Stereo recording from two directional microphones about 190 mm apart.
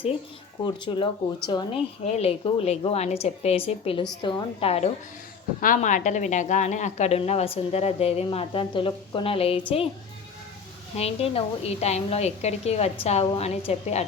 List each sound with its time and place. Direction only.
0.6 s a woman's voice: 25° left (ahead or behind)
2.1 s a woman's voice: 30° left (ahead or behind)
5.5 s a woman's voice: 45° left (ahead or behind); by 9.9 s 30° left (ahead or behind)
10.9 s a woman's voice: 30° left (ahead or behind)